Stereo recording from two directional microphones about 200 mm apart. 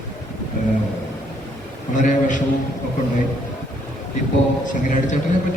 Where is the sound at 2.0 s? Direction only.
40° left (ahead or behind).